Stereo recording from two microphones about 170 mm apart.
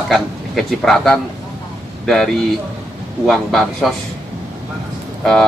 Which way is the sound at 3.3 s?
Centre (ahead or behind).